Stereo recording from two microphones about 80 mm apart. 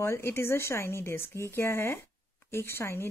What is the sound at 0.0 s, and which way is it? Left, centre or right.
Speech, left.